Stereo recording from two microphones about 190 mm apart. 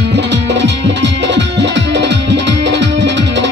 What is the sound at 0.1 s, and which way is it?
Music, 65° right (ahead or behind).